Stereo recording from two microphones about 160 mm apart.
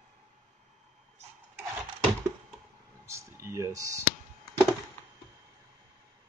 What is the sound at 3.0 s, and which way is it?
Clicking, 15° right (ahead or behind).